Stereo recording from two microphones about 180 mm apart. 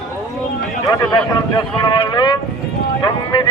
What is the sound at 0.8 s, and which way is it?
A man's voice, 20° left (ahead or behind).